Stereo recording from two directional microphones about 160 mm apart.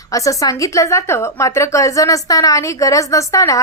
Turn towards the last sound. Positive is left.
turn(degrees=20)  # may be behind; listen again after turning